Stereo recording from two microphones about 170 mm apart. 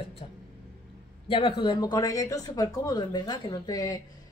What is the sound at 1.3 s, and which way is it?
Speech, 30° left (ahead or behind).